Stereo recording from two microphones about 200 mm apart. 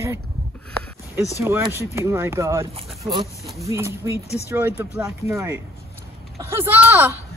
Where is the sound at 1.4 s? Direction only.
10° right (ahead or behind).